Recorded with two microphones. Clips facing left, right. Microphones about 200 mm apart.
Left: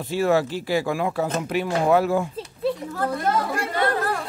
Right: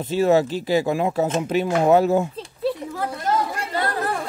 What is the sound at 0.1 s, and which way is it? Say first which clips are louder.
A man's voice: right 3 dB; 20° right (ahead or behind).